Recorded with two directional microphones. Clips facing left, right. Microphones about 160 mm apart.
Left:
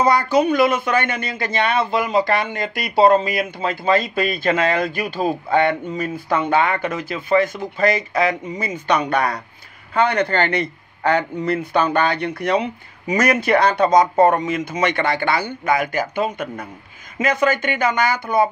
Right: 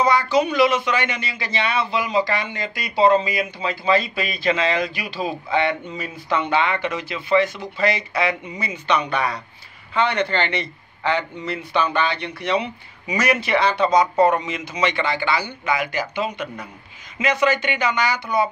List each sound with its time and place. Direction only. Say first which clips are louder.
0.0 s a man's voice: left 2 dB; 50° left (ahead or behind)